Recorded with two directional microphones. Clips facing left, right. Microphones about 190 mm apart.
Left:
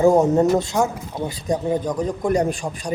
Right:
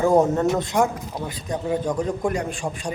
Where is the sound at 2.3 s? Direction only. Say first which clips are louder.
Left 6 dB; 40° left (ahead or behind).